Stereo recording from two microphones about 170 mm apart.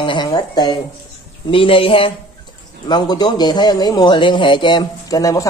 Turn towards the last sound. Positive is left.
turn(degrees=20)  # may be behind; listen again after turning